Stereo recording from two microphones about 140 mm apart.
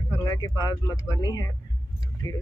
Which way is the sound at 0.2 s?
30° left (ahead or behind).